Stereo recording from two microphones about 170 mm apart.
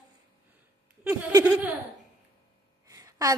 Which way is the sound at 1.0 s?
20° right (ahead or behind).